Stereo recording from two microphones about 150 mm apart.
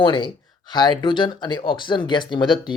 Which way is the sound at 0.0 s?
30° left (ahead or behind).